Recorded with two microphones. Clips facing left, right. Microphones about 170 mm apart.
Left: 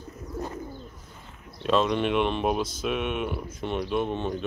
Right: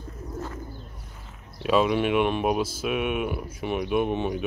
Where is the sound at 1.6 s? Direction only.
5° right (ahead or behind).